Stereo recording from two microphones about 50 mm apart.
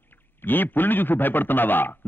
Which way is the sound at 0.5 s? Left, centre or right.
Left.